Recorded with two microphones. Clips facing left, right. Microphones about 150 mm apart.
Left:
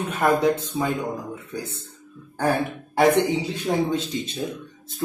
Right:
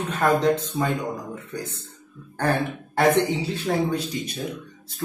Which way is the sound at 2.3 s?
10° left (ahead or behind).